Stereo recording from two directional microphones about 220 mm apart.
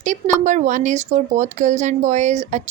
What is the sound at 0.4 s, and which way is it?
Speech, 35° right (ahead or behind).